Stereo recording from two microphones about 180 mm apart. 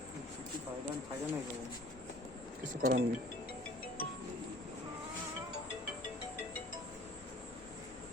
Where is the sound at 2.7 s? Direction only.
45° right (ahead or behind).